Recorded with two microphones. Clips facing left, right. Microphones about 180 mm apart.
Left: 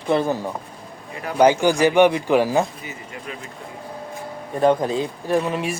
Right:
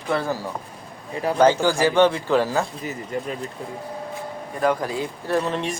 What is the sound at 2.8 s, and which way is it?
Speech, 40° right (ahead or behind).